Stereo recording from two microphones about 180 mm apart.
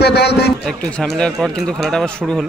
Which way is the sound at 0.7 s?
5° left (ahead or behind).